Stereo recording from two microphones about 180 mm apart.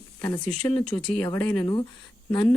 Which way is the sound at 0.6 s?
10° left (ahead or behind).